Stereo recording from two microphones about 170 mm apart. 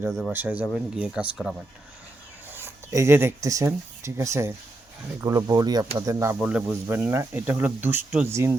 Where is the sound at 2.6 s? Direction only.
15° right (ahead or behind).